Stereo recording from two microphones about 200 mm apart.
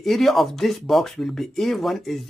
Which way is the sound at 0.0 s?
Centre (ahead or behind).